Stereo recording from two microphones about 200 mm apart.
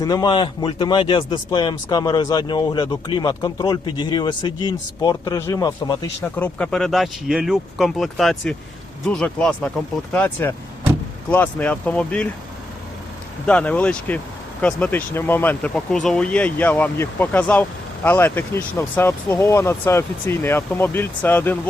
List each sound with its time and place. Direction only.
0.0 s speech: 20° left (ahead or behind)
13.5 s speech: 5° left (ahead or behind)